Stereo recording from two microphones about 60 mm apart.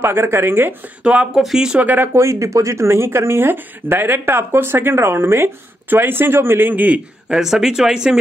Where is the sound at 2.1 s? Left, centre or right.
Right.